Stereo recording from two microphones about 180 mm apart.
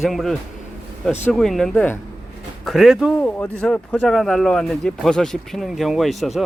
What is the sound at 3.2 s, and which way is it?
Speech, 10° left (ahead or behind).